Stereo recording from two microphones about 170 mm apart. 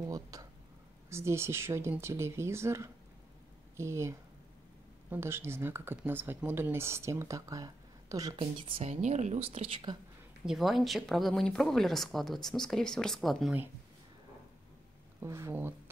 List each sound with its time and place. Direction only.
0.0 s a sound: 20° right (ahead or behind)
1.1 s speech: 15° right (ahead or behind); by 9.9 s 35° right (ahead or behind)
10.4 s speech: centre (ahead or behind)
15.1 s speech: 15° right (ahead or behind)